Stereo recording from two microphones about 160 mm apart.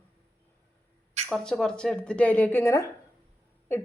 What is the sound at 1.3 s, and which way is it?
A woman's voice, centre (ahead or behind).